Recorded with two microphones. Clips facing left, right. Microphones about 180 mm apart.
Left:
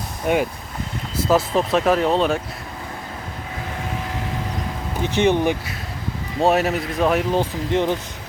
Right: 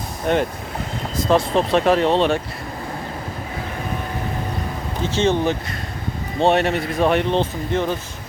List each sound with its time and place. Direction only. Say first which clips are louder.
0.3 s speech: even; 10° left (ahead or behind)
5.0 s speech: left 1 dB; 15° left (ahead or behind)
7.7 s speech: left 3 dB; 20° left (ahead or behind)